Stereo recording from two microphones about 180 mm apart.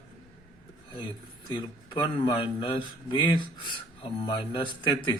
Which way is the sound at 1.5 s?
25° left (ahead or behind).